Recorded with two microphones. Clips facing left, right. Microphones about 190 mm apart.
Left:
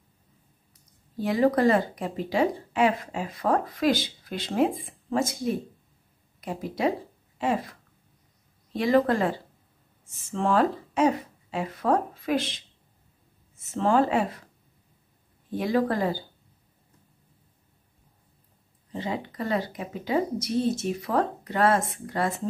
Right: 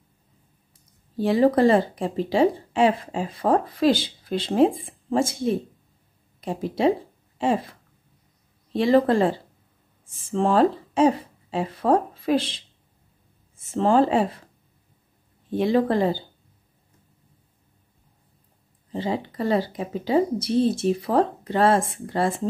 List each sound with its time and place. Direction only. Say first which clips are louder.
1.1 s speech: right 4 dB; 30° right (ahead or behind)
8.7 s speech: right 4 dB; 30° right (ahead or behind)
15.5 s speech: right 4 dB; 25° right (ahead or behind)
18.9 s speech: right 4 dB; 30° right (ahead or behind)